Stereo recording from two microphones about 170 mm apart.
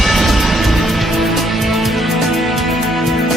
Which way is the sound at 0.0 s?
Centre (ahead or behind).